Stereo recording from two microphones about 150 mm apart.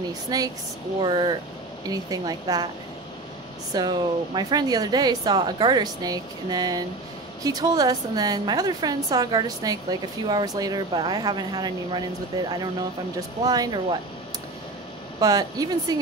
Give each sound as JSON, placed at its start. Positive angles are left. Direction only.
{"t": 0.3, "sound": "a woman's voice", "side_deg": -25}
{"t": 3.7, "sound": "a woman's voice", "side_deg": -25}
{"t": 13.5, "sound": "a woman's voice", "side_deg": -25}
{"t": 15.1, "sound": "a woman's voice", "side_deg": -25}